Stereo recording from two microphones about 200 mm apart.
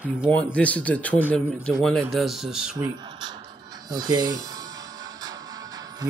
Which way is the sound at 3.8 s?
20° right (ahead or behind).